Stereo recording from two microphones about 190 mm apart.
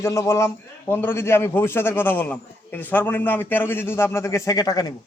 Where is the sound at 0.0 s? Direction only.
15° left (ahead or behind).